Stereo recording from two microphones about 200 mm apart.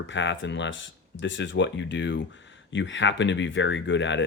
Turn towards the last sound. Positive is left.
turn(degrees=65)  # may be behind; listen again after turning